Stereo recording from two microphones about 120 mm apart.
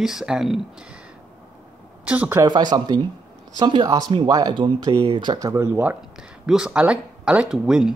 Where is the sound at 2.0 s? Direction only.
15° right (ahead or behind).